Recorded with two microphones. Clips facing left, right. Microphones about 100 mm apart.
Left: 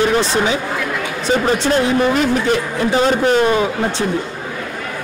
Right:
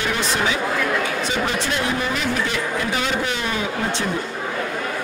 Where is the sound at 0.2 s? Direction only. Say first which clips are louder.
Left 5 dB; 30° left (ahead or behind).